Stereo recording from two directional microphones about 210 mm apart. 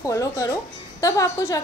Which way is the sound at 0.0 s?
15° left (ahead or behind).